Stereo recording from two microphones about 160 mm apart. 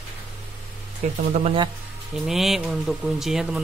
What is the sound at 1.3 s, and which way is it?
Speech, 40° right (ahead or behind).